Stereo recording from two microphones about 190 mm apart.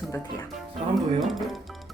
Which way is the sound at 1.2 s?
Centre (ahead or behind).